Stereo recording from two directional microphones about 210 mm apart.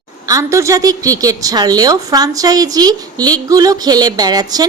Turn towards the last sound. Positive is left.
turn(degrees=-20)  # may be behind; listen again after turning